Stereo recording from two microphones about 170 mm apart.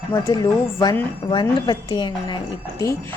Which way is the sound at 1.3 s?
25° left (ahead or behind).